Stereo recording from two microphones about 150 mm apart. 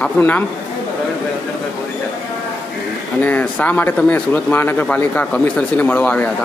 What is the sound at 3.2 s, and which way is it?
Speech, 10° left (ahead or behind).